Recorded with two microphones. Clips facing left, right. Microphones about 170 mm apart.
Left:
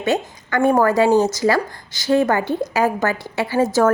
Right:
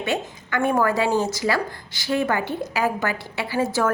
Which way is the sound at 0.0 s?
40° left (ahead or behind).